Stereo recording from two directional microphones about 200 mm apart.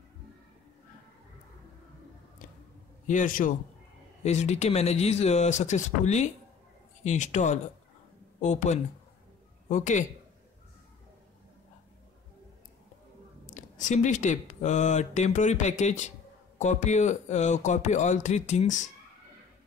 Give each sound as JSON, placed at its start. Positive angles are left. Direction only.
{"t": 3.1, "sound": "speech", "side_deg": 40}
{"t": 13.5, "sound": "speech", "side_deg": 40}